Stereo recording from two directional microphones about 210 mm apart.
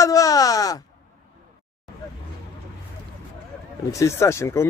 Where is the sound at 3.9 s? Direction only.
15° left (ahead or behind).